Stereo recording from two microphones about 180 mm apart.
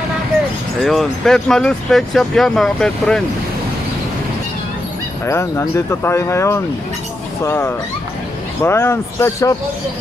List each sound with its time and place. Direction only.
0.7 s speech: centre (ahead or behind)
5.2 s speech: 15° left (ahead or behind)